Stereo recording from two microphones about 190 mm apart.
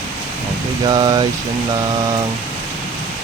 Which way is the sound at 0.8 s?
25° right (ahead or behind).